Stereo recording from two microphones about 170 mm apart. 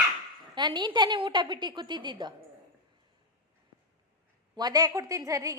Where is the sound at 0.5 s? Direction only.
25° right (ahead or behind).